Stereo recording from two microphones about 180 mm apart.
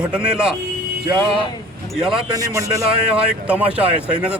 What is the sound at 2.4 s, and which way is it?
Speech, 15° right (ahead or behind).